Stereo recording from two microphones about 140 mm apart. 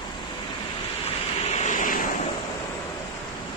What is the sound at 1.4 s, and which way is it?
Vehicle, 55° left (ahead or behind).